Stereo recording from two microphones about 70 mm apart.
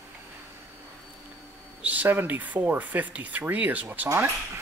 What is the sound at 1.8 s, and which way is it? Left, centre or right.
Speech, right.